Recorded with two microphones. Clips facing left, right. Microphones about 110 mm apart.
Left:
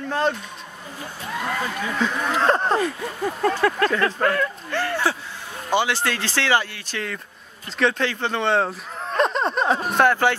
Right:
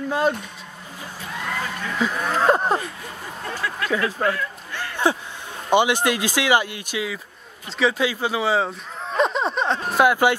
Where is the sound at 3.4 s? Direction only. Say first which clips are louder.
Left 9 dB; 55° left (ahead or behind).